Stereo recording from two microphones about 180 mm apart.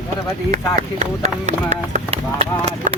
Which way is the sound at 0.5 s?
40° right (ahead or behind).